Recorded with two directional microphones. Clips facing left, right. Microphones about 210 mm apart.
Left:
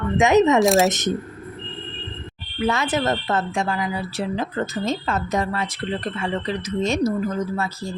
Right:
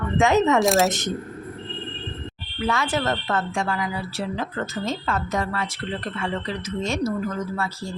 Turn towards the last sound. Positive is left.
turn(degrees=20)  # may be behind; listen again after turning